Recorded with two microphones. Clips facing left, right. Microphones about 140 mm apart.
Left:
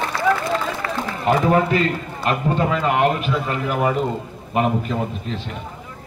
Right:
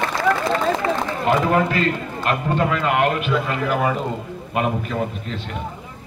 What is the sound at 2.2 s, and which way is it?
A man's voice, 35° left (ahead or behind).